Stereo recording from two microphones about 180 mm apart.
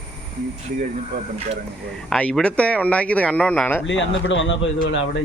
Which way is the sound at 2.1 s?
5° left (ahead or behind).